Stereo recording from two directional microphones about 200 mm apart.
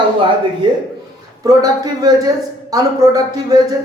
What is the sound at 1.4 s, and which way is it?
Speech, 20° right (ahead or behind).